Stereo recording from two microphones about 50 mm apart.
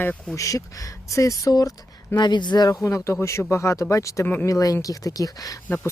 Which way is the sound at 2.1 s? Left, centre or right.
Left.